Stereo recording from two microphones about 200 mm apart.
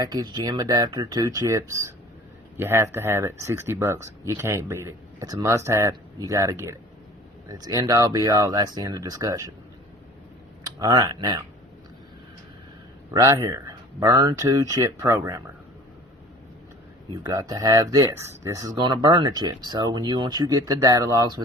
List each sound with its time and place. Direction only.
0.0 s speech: 20° right (ahead or behind)
10.6 s speech: 20° right (ahead or behind)
13.1 s speech: 15° right (ahead or behind)
17.1 s speech: 20° right (ahead or behind)